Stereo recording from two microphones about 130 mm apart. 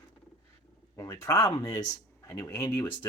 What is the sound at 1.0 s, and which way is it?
Speech, 25° left (ahead or behind).